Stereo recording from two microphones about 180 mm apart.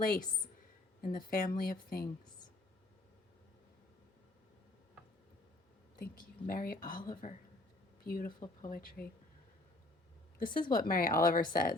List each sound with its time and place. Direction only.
0.0 s speech: 55° left (ahead or behind)
6.0 s speech: 55° left (ahead or behind)
10.4 s speech: 50° left (ahead or behind)